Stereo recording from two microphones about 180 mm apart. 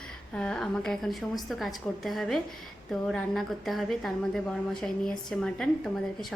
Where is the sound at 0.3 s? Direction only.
5° left (ahead or behind).